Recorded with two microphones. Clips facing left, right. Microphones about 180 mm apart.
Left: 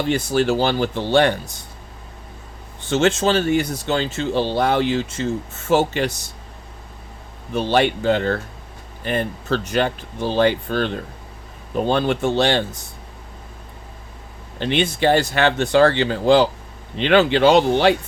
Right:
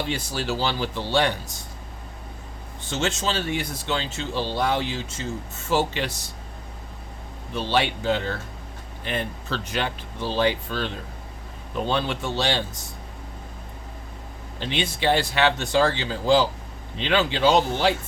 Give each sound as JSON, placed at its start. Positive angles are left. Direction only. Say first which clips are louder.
{"t": 0.1, "sound": "speech", "louder": "left 9 dB", "side_deg": 50}
{"t": 2.9, "sound": "speech", "louder": "left 9 dB", "side_deg": 60}
{"t": 7.5, "sound": "speech", "louder": "left 6 dB", "side_deg": 50}
{"t": 9.0, "sound": "speech", "louder": "left 7 dB", "side_deg": 45}
{"t": 14.6, "sound": "speech", "louder": "left 7 dB", "side_deg": 55}